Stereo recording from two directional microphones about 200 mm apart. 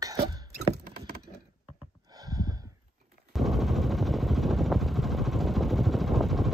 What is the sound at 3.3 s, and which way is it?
Vehicle, centre (ahead or behind).